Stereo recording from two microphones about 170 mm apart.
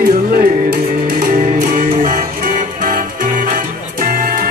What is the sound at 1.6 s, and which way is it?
Music, 50° right (ahead or behind).